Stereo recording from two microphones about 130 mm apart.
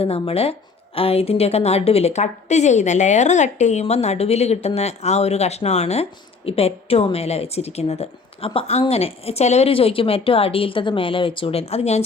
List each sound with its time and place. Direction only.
0.0 s a woman's voice: 50° left (ahead or behind)